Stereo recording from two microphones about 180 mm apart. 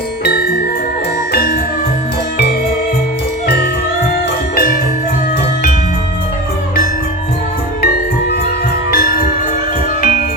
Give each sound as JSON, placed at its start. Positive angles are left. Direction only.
{"t": 0.3, "sound": "music", "side_deg": 60}
{"t": 3.4, "sound": "jingle bell", "side_deg": 65}
{"t": 7.8, "sound": "music", "side_deg": 60}